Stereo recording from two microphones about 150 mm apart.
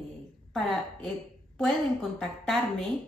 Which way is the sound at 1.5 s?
5° left (ahead or behind).